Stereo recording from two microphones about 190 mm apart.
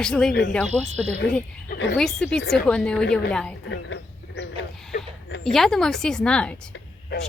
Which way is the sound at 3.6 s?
70° left (ahead or behind).